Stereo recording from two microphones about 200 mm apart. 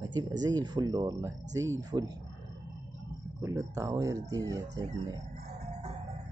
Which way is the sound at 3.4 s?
15° right (ahead or behind).